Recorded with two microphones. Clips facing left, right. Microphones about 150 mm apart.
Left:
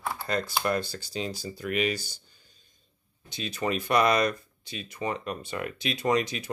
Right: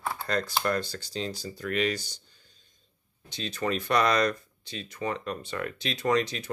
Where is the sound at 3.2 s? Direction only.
10° left (ahead or behind).